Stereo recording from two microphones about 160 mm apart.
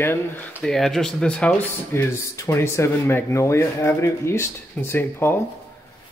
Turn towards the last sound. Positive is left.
turn(degrees=15)  # may be behind; listen again after turning